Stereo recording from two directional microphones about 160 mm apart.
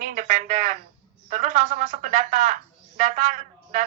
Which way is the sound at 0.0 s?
55° right (ahead or behind).